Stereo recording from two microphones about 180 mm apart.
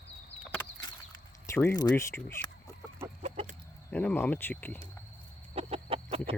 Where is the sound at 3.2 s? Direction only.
35° right (ahead or behind).